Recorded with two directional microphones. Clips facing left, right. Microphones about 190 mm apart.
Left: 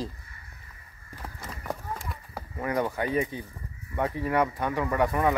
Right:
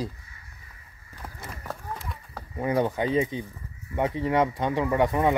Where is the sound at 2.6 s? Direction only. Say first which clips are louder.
Right 3 dB; 20° right (ahead or behind).